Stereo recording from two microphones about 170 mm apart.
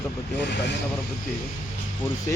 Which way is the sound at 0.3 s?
90° left.